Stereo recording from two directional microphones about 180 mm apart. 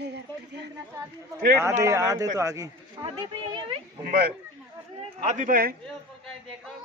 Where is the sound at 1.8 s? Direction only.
15° right (ahead or behind).